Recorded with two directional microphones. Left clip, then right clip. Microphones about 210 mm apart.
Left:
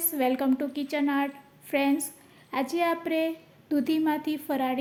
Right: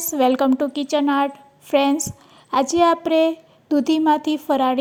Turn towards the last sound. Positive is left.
turn(degrees=-30)  # may be behind; listen again after turning